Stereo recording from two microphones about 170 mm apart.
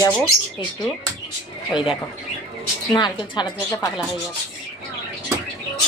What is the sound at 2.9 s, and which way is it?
Speech, 25° left (ahead or behind).